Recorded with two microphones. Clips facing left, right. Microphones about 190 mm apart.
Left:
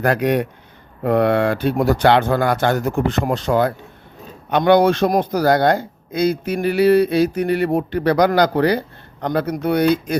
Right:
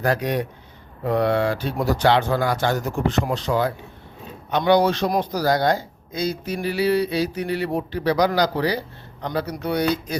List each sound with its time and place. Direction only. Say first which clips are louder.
0.0 s a man's voice: left 5 dB; 60° left (ahead or behind)